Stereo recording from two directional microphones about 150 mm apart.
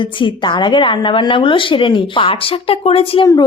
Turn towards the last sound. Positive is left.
turn(degrees=40)  # may be behind; listen again after turning